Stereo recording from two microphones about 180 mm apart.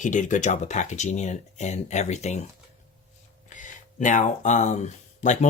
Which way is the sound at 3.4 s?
45° left (ahead or behind).